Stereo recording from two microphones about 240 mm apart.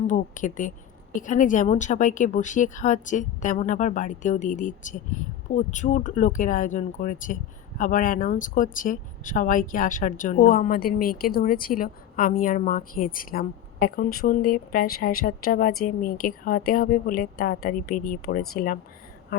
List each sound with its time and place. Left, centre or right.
0.1 s speech: left